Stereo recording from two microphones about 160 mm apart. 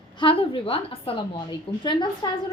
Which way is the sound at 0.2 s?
35° left (ahead or behind).